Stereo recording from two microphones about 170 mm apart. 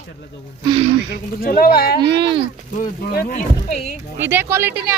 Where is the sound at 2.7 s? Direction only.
60° left (ahead or behind).